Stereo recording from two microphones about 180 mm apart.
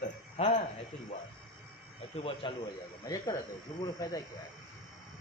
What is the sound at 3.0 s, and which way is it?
Speech, 20° left (ahead or behind).